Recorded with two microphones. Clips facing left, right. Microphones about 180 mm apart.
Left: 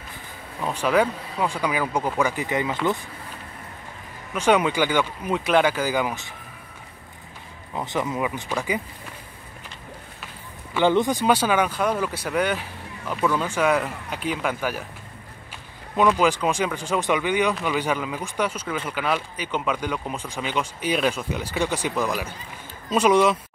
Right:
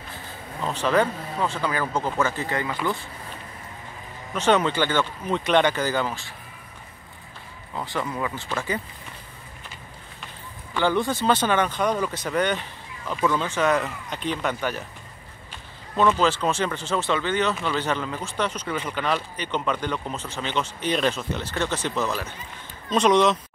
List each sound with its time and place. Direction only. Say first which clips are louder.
0.7 s speech: left 1 dB; 10° left (ahead or behind)
4.3 s speech: left 1 dB; 10° left (ahead or behind)
7.7 s speech: left 3 dB; 20° left (ahead or behind)
10.8 s speech: left 3 dB; 20° left (ahead or behind)
16.2 s speech: left 1 dB; 10° left (ahead or behind)